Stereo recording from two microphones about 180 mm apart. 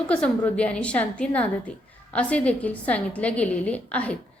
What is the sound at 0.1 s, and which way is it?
A woman's voice, 5° left (ahead or behind).